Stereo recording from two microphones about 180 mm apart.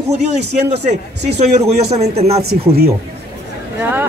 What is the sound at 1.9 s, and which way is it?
Speech, 35° right (ahead or behind).